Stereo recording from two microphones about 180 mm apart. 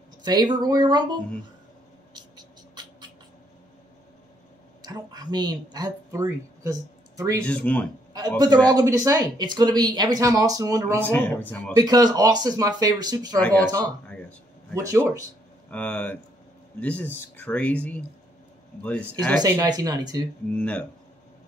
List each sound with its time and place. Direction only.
0.2 s speech: 25° right (ahead or behind)
2.1 s a sound: 25° right (ahead or behind)
4.8 s speech: 25° right (ahead or behind)
7.4 s speech: 5° left (ahead or behind)
8.7 s speech: 20° right (ahead or behind)
11.1 s speech: 10° left (ahead or behind)
11.7 s speech: 20° right (ahead or behind)
13.4 s speech: 5° left (ahead or behind)
13.7 s speech: 20° right (ahead or behind)
15.7 s speech: 10° left (ahead or behind)
19.4 s speech: 20° right (ahead or behind)
20.5 s speech: 5° left (ahead or behind)